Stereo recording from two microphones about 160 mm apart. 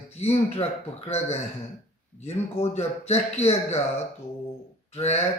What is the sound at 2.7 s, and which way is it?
Speech, 40° left (ahead or behind).